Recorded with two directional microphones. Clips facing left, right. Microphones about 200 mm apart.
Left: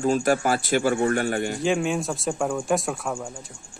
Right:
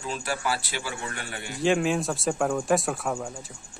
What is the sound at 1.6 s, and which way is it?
Speech, centre (ahead or behind).